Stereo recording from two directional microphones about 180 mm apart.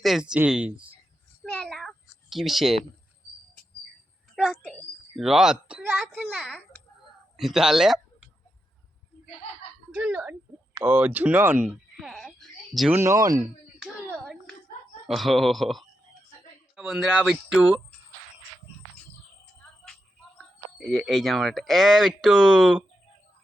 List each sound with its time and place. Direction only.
0.0 s a child's voice: centre (ahead or behind)
4.4 s a woman's voice: centre (ahead or behind)
9.9 s speech: 5° right (ahead or behind)
12.9 s speech: 15° right (ahead or behind)
13.4 s clapping: centre (ahead or behind)
14.1 s a child's voice: 5° left (ahead or behind)
20.4 s speech: centre (ahead or behind)